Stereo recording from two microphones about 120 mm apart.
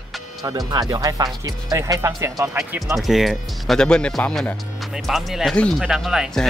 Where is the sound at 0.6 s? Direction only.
35° right (ahead or behind).